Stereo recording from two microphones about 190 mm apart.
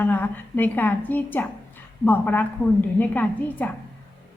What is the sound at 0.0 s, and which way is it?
A woman's voice, 10° left (ahead or behind).